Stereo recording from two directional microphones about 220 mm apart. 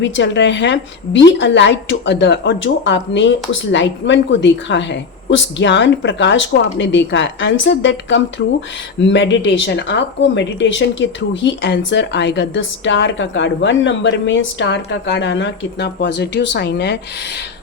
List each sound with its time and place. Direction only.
0.0 s a woman's voice: 55° left (ahead or behind)